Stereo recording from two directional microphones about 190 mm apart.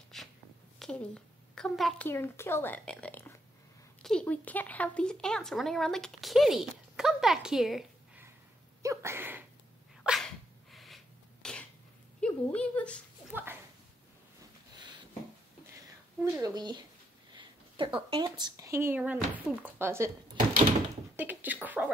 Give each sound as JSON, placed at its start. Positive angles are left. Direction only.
{"t": 0.1, "sound": "a sound", "side_deg": 0}
{"t": 0.7, "sound": "a woman's voice", "side_deg": 5}
{"t": 2.0, "sound": "a woman's voice", "side_deg": 15}
{"t": 8.8, "sound": "speech", "side_deg": -15}
{"t": 10.0, "sound": "sneeze", "side_deg": 0}
{"t": 11.4, "sound": "cough", "side_deg": 5}
{"t": 12.2, "sound": "a woman's voice", "side_deg": 5}
{"t": 13.3, "sound": "a sound", "side_deg": -10}
{"t": 16.3, "sound": "speech", "side_deg": -20}
{"t": 17.3, "sound": "a sound", "side_deg": -25}
{"t": 18.4, "sound": "speech", "side_deg": -15}
{"t": 21.2, "sound": "beatboxing", "side_deg": -10}